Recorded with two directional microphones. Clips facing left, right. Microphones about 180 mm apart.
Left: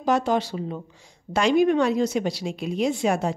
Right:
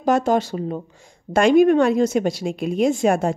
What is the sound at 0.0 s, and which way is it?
Speech, 45° right (ahead or behind).